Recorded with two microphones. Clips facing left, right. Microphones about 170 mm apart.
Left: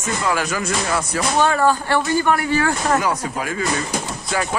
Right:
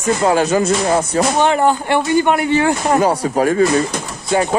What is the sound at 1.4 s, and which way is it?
Speech, 20° right (ahead or behind).